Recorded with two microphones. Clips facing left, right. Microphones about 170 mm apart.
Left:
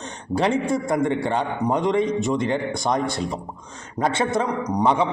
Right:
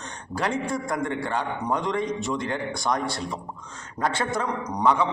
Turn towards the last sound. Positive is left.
turn(degrees=20)  # may be behind; listen again after turning